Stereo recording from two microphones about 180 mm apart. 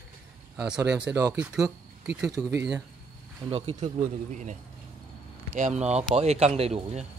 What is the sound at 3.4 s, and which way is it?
Speech, 35° right (ahead or behind).